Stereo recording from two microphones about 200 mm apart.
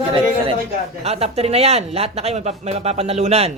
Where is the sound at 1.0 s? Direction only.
30° right (ahead or behind).